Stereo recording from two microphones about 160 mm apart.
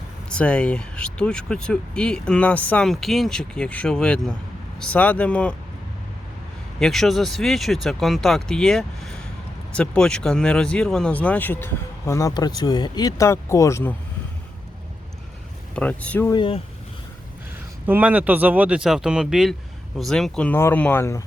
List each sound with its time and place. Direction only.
0.3 s speech: 5° left (ahead or behind)
6.7 s speech: centre (ahead or behind)
15.7 s speech: 10° left (ahead or behind)
16.3 s speech: 30° left (ahead or behind)
17.8 s speech: 10° right (ahead or behind); by 21.2 s 15° left (ahead or behind)